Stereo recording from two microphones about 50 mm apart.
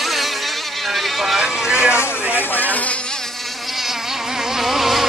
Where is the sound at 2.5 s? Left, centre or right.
Left.